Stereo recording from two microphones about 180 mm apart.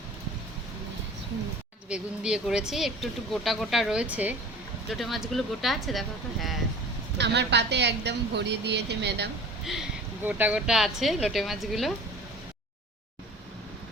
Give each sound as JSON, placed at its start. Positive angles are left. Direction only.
{"t": 1.9, "sound": "speech", "side_deg": -5}
{"t": 7.2, "sound": "a woman's voice", "side_deg": -70}
{"t": 10.2, "sound": "speech", "side_deg": -10}